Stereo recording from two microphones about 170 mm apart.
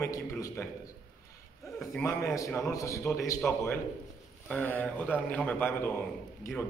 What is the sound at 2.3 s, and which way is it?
Speech, 20° left (ahead or behind).